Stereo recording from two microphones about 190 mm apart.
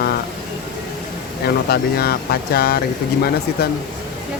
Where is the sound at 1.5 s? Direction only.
55° left (ahead or behind).